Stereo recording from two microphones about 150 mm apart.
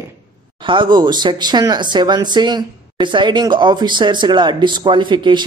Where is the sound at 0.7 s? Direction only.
30° right (ahead or behind).